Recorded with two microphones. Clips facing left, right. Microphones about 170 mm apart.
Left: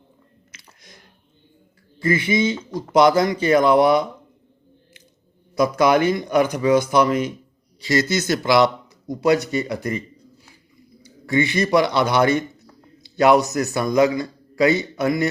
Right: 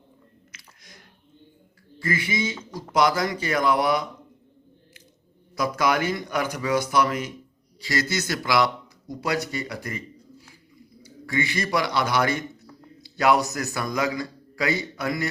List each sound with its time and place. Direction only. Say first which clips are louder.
0.5 s chewing: left 3 dB; 25° left (ahead or behind)
2.0 s speech: left 7 dB; 25° left (ahead or behind)
5.5 s speech: left 7 dB; 25° left (ahead or behind)
11.0 s a man's voice: left 7 dB; 25° left (ahead or behind)